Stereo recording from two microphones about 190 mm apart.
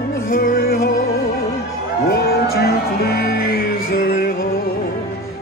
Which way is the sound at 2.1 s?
55° left (ahead or behind).